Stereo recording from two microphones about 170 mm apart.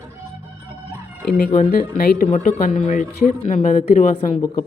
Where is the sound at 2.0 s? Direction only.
55° left (ahead or behind).